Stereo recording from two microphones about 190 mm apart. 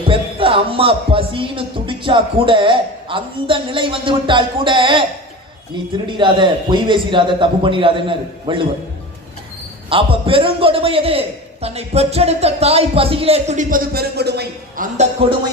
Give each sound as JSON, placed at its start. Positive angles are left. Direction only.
{"t": 0.1, "sound": "speech", "side_deg": -30}
{"t": 6.1, "sound": "speech", "side_deg": -25}
{"t": 9.9, "sound": "a man's voice", "side_deg": -30}
{"t": 14.9, "sound": "a man's voice", "side_deg": -30}